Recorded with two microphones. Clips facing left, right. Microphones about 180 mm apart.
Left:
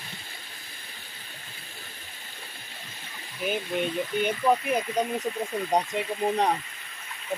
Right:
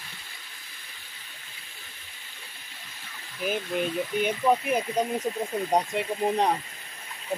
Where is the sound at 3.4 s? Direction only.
Centre (ahead or behind).